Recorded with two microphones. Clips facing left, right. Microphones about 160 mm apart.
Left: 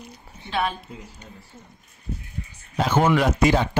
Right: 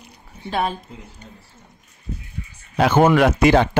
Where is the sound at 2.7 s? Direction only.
65° right (ahead or behind).